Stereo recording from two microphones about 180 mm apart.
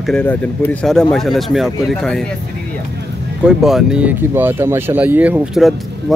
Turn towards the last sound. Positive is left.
turn(degrees=0)  # may be behind; listen again after turning